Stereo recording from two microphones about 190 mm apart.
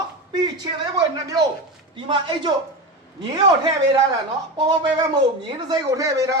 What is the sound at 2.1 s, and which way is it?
A man's voice, 25° right (ahead or behind).